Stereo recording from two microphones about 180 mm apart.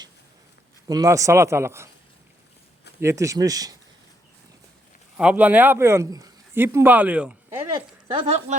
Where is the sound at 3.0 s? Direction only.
15° right (ahead or behind).